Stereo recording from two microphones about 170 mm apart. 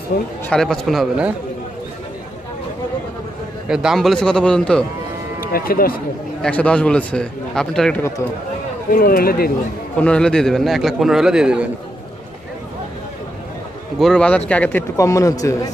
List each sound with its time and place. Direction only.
0.5 s a man's voice: 5° left (ahead or behind)
3.6 s a man's voice: 5° right (ahead or behind)
5.5 s speech: 60° left (ahead or behind)
6.4 s a man's voice: 5° left (ahead or behind)
8.9 s speech: 60° left (ahead or behind)
9.9 s a man's voice: 5° left (ahead or behind)
13.9 s a man's voice: 5° left (ahead or behind); by 15.7 s 20° left (ahead or behind)